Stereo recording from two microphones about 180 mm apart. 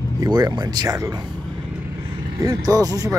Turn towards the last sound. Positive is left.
turn(degrees=-20)  # may be behind; listen again after turning